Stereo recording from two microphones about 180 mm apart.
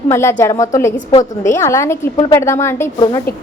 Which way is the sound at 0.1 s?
15° left (ahead or behind).